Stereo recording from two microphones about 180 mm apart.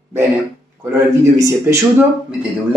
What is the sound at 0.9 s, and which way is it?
A man's voice, 15° right (ahead or behind).